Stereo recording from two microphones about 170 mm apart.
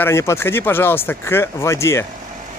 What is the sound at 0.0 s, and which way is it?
Speech, 15° left (ahead or behind).